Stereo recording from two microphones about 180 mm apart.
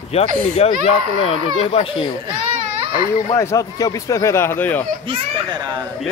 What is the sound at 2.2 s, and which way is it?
Baby cry, 25° right (ahead or behind).